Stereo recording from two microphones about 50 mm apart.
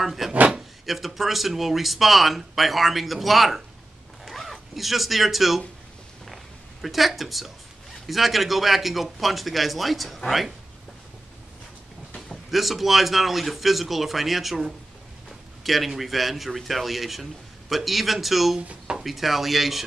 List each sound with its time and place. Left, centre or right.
0.0 s drawer open or close: centre
0.8 s a man's voice: centre
6.2 s a sound: centre
8.1 s a man's voice: centre
12.4 s a man's voice: centre
18.6 s speech: right
19.0 s a man's voice: centre